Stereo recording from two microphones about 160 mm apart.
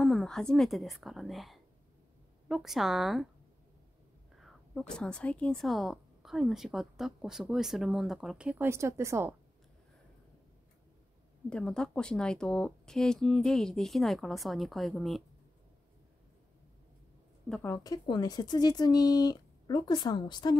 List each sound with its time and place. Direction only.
0.0 s a woman's voice: 5° left (ahead or behind)
4.4 s a woman's voice: centre (ahead or behind); by 9.3 s 15° right (ahead or behind)
11.4 s a woman's voice: 5° left (ahead or behind)
17.5 s speech: 10° left (ahead or behind)
17.8 s speech: 25° left (ahead or behind)